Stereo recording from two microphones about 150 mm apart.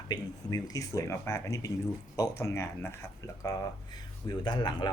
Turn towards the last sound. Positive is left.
turn(degrees=30)  # may be behind; listen again after turning